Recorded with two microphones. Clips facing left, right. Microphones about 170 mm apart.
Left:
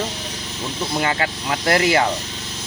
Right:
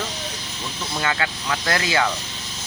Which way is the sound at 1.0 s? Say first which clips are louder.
Left 2 dB; 30° left (ahead or behind).